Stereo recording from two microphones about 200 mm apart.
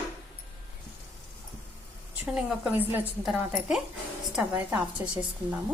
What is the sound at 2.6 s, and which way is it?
A woman's voice, 10° right (ahead or behind).